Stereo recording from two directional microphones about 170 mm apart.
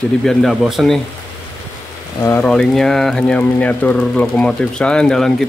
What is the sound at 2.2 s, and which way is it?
Speech, 15° left (ahead or behind).